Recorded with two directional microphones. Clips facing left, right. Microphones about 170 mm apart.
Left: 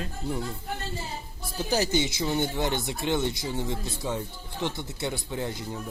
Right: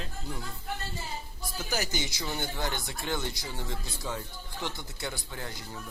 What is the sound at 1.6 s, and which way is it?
Speech, 30° left (ahead or behind).